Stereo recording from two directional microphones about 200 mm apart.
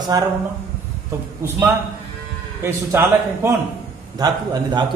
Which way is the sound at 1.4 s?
15° right (ahead or behind).